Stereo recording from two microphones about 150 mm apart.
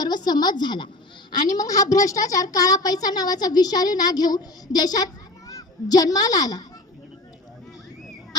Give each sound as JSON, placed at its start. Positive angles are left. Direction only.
{"t": 0.0, "sound": "a woman's voice", "side_deg": 30}